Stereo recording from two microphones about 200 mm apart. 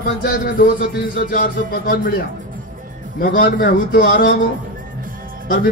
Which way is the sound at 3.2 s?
45° left (ahead or behind).